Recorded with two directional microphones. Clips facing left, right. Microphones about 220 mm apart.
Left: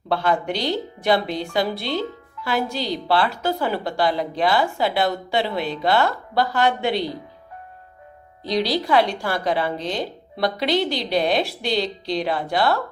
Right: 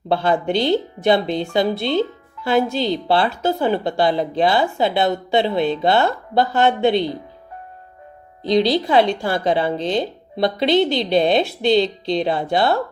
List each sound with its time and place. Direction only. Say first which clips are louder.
0.1 s speech: right 4 dB; 25° right (ahead or behind)
8.4 s speech: right 5 dB; 25° right (ahead or behind)